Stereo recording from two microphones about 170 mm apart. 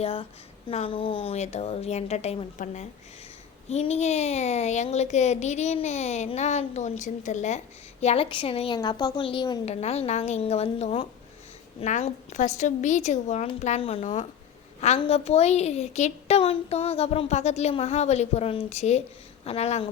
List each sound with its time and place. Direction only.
0.0 s a woman's voice: 35° left (ahead or behind)